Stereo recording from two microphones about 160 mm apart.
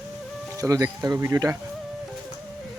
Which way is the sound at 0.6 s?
20° right (ahead or behind).